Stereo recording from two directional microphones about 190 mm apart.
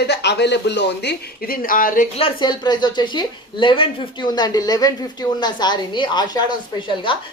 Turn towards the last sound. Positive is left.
turn(degrees=25)  # may be behind; listen again after turning